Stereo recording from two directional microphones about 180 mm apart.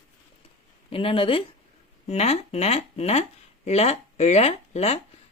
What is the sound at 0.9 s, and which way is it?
Speech, 30° left (ahead or behind).